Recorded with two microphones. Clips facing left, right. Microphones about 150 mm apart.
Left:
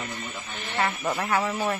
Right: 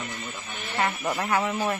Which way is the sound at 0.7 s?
10° right (ahead or behind).